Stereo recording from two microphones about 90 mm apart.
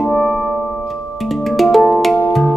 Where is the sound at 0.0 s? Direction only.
5° left (ahead or behind).